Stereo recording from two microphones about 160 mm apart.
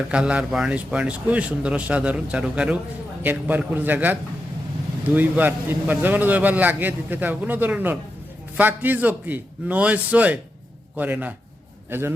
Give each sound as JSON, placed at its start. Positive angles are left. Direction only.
{"t": 0.1, "sound": "a man's voice", "side_deg": -5}